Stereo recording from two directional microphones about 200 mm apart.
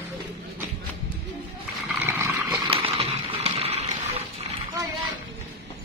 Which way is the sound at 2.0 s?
10° right (ahead or behind).